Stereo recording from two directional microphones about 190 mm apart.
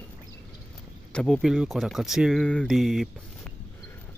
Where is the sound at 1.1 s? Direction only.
Centre (ahead or behind).